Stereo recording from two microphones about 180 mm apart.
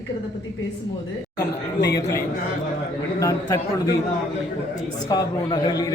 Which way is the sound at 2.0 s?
20° left (ahead or behind).